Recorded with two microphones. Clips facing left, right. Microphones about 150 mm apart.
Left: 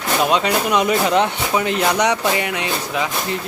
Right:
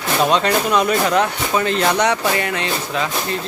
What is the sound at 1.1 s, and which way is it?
Speech, 25° left (ahead or behind).